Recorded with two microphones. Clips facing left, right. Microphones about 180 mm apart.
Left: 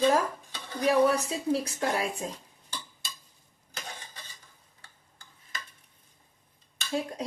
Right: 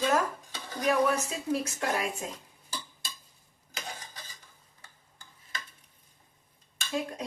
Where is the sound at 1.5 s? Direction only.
30° left (ahead or behind).